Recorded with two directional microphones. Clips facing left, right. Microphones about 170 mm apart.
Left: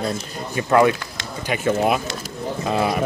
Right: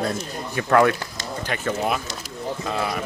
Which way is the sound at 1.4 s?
10° left (ahead or behind).